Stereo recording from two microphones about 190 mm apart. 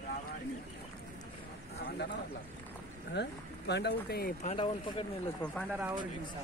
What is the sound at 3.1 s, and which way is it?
Speech, 60° left (ahead or behind).